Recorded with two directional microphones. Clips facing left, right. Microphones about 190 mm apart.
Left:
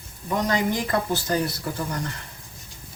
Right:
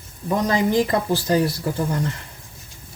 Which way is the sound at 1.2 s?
30° right (ahead or behind).